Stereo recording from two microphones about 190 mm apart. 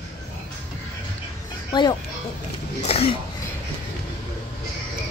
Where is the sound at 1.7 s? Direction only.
20° left (ahead or behind).